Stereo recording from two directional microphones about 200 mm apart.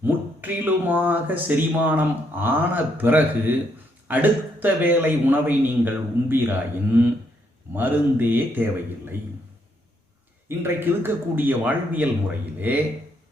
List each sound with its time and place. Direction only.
0.0 s a man's voice: 10° right (ahead or behind)
10.6 s a man's voice: 10° right (ahead or behind)